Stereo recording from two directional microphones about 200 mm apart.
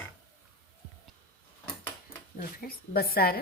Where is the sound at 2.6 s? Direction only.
50° left (ahead or behind).